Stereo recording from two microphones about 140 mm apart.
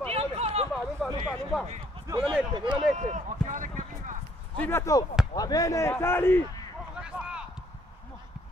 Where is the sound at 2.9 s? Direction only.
55° right (ahead or behind).